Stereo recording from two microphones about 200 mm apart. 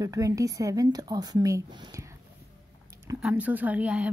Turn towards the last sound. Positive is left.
turn(degrees=-5)  # may be behind; listen again after turning